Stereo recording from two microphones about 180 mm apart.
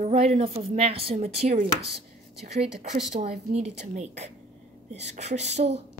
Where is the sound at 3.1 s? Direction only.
40° right (ahead or behind).